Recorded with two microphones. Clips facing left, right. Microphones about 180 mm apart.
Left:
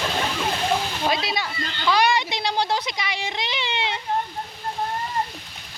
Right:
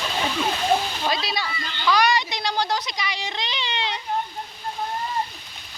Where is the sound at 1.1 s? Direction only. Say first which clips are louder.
Left 2 dB; 20° left (ahead or behind).